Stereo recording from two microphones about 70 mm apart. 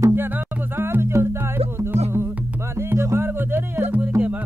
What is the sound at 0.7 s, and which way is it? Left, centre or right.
Music, right.